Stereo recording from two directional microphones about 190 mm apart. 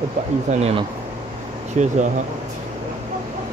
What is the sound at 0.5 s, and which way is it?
Speech, 35° right (ahead or behind).